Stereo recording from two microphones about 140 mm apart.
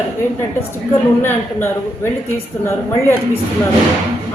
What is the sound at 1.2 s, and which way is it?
Speech, 15° left (ahead or behind).